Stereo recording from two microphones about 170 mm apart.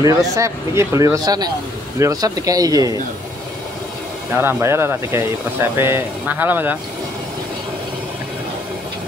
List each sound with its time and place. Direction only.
0.0 s speech: 20° right (ahead or behind)
4.4 s speech: 15° right (ahead or behind)